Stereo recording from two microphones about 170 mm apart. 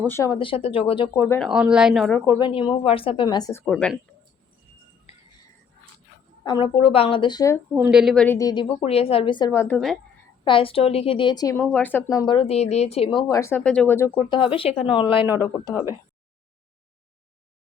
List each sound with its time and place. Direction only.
0.1 s speech: 20° left (ahead or behind)
0.3 s a woman's voice: 35° left (ahead or behind)
1.1 s speech: 20° left (ahead or behind)
1.4 s speech: 5° right (ahead or behind)
2.1 s speech: 20° left (ahead or behind)
3.6 s speech: 5° left (ahead or behind)
6.4 s a woman's voice: 25° left (ahead or behind)
7.7 s speech: 5° right (ahead or behind)
8.4 s speech: 20° left (ahead or behind)
8.8 s speech: 35° left (ahead or behind); by 10.0 s 5° left (ahead or behind)
10.4 s a woman's voice: 30° left (ahead or behind)
11.7 s speech: 10° left (ahead or behind)
14.3 s a woman's voice: 30° left (ahead or behind)
15.3 s speech: 15° right (ahead or behind)